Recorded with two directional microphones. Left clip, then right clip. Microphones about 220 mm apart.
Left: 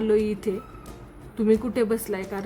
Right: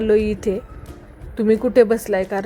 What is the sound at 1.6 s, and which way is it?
Speech, 20° right (ahead or behind).